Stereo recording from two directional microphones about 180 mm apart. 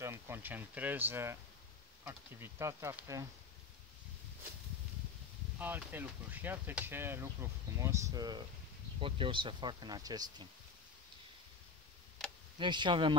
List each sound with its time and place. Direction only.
0.0 s speech: 15° right (ahead or behind)
5.6 s speech: 10° right (ahead or behind)
12.2 s tick: 5° left (ahead or behind)
12.5 s speech: 25° right (ahead or behind)